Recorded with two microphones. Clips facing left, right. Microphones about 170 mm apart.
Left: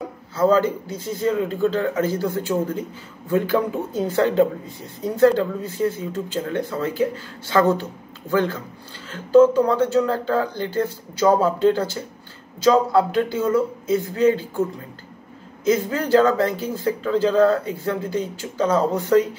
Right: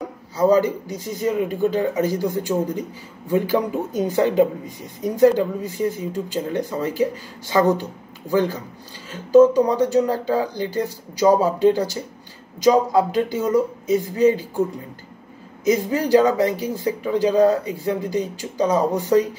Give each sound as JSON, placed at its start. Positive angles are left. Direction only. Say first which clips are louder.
{"t": 0.4, "sound": "speech", "louder": "right 1 dB", "side_deg": -15}
{"t": 15.6, "sound": "speech", "louder": "right 1 dB", "side_deg": -15}